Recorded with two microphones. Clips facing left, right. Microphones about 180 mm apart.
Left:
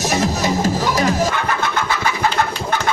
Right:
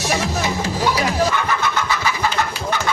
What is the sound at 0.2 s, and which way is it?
Music, 45° left (ahead or behind).